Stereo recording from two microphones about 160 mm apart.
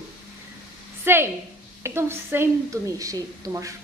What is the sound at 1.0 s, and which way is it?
A woman's voice, 15° right (ahead or behind).